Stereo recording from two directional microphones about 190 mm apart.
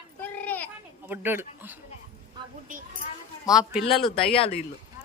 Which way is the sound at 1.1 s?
10° right (ahead or behind).